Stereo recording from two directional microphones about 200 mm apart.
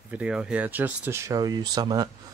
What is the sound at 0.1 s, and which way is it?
Speech, 5° right (ahead or behind).